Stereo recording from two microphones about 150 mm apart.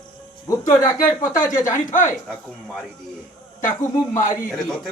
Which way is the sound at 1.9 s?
60° left (ahead or behind).